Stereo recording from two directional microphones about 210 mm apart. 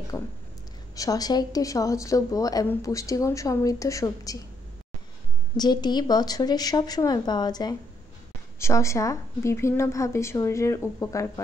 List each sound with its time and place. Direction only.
0.1 s speech: 15° left (ahead or behind)
5.6 s a woman's voice: 20° left (ahead or behind)